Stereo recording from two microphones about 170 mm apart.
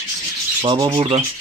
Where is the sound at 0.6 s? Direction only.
25° right (ahead or behind).